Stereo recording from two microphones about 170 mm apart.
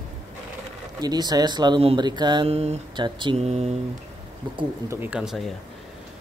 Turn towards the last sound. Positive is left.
turn(degrees=0)  # may be behind; listen again after turning